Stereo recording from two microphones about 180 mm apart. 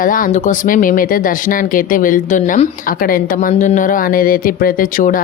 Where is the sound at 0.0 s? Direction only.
50° left (ahead or behind).